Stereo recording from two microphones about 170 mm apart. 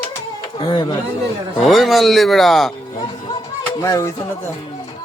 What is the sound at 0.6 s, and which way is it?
Speech, 30° left (ahead or behind).